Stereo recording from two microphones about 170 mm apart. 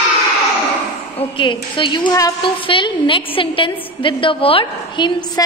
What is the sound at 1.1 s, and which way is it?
A woman's voice, 30° left (ahead or behind).